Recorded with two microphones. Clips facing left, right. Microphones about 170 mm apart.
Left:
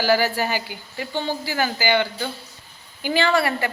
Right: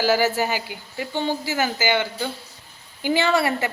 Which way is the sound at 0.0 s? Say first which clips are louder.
Even; 20° right (ahead or behind).